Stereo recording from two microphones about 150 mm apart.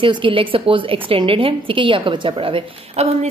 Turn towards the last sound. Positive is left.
turn(degrees=-35)  # may be behind; listen again after turning